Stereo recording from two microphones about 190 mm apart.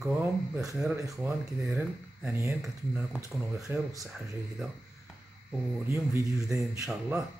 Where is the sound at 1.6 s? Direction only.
5° right (ahead or behind).